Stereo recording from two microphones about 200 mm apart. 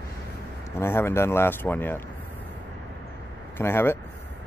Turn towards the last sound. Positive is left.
turn(degrees=10)  # may be behind; listen again after turning